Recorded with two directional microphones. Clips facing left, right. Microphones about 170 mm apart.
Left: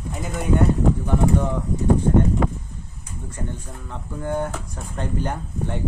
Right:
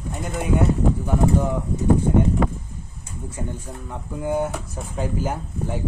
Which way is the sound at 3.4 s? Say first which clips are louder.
Right 1 dB; 10° right (ahead or behind).